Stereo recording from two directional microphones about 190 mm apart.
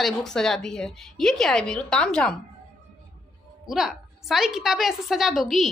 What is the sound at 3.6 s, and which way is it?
A woman's voice, centre (ahead or behind).